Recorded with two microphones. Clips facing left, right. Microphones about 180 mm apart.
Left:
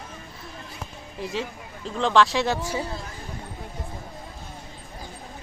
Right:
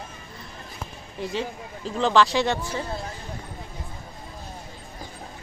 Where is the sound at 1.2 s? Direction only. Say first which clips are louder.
Right 1 dB; centre (ahead or behind).